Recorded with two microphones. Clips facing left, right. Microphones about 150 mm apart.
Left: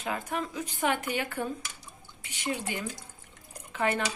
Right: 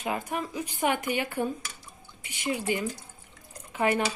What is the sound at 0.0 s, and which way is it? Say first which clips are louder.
Speech: right 2 dB; 15° right (ahead or behind).